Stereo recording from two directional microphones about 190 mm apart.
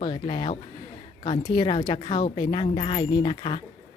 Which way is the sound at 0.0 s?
25° left (ahead or behind).